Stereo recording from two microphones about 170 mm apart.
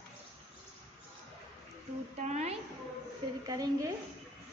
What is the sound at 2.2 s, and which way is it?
Speech, 40° right (ahead or behind).